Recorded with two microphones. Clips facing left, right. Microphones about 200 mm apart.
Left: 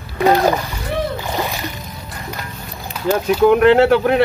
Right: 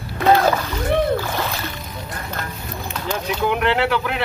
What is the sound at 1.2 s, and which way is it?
Music, 15° left (ahead or behind).